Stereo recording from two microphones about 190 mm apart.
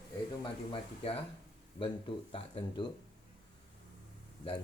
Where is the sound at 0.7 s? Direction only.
30° left (ahead or behind).